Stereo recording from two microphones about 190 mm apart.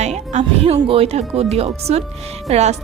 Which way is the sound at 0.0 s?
35° right (ahead or behind).